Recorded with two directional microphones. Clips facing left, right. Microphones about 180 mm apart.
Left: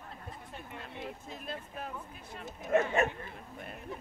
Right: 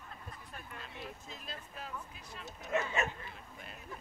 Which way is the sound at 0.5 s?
25° left (ahead or behind).